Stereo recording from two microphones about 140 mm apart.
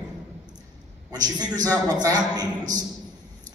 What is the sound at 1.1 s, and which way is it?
A woman's voice, 30° right (ahead or behind).